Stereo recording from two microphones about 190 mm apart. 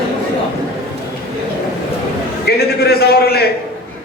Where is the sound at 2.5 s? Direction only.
55° left (ahead or behind).